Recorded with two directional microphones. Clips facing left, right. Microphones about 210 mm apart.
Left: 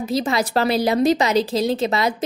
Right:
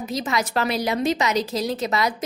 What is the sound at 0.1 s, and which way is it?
A woman's voice, 30° left (ahead or behind).